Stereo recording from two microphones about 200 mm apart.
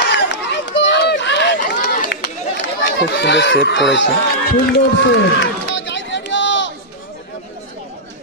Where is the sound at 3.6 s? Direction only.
60° left (ahead or behind).